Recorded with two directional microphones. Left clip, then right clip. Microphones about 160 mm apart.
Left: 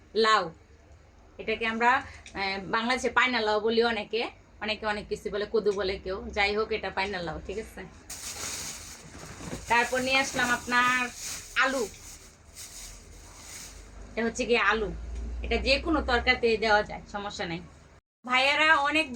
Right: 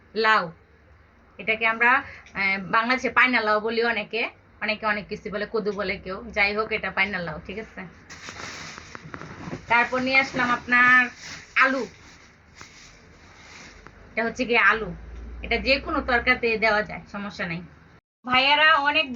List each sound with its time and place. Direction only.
0.1 s a man's voice: 35° left (ahead or behind)
1.5 s a woman's voice: 35° left (ahead or behind)
9.6 s a woman's voice: 30° left (ahead or behind)
14.2 s a woman's voice: 35° left (ahead or behind)